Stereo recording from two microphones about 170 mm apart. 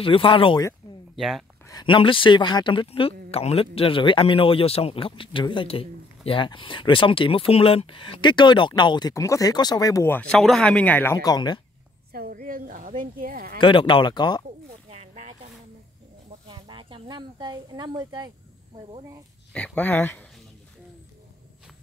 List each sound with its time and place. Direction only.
0.0 s speech: 30° left (ahead or behind)
1.1 s speech: centre (ahead or behind)
1.7 s speech: 25° left (ahead or behind)
12.1 s a woman's voice: 60° right (ahead or behind)
13.6 s speech: 30° left (ahead or behind)
14.9 s a sound: 40° right (ahead or behind)
16.4 s a sound: 30° right (ahead or behind)
19.5 s speech: 10° left (ahead or behind)